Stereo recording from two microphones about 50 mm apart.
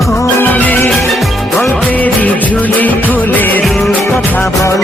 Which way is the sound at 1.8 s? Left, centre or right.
Left.